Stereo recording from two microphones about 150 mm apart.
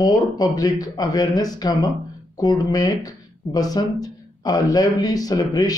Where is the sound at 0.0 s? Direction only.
25° left (ahead or behind).